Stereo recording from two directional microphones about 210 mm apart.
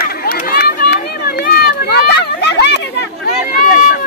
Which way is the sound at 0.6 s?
50° left (ahead or behind).